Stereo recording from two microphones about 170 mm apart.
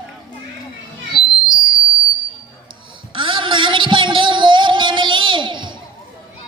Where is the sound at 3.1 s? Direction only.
30° right (ahead or behind).